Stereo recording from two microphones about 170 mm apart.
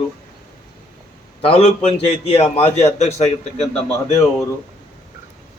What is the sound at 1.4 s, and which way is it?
A man's voice, 35° left (ahead or behind).